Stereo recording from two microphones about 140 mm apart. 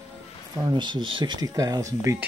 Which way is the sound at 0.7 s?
35° right (ahead or behind).